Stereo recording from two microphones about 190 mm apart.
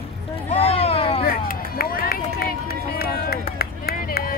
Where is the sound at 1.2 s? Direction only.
50° left (ahead or behind).